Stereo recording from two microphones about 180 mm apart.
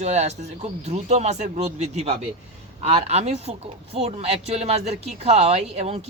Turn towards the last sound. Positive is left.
turn(degrees=-35)  # may be behind; listen again after turning